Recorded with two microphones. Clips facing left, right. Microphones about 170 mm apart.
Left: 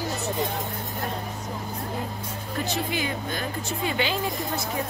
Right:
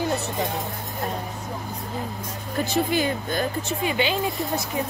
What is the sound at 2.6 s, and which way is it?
Speech, 40° right (ahead or behind).